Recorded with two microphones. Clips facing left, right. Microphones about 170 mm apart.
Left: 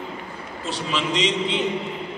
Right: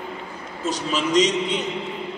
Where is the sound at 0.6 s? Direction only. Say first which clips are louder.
Right 2 dB; 45° right (ahead or behind).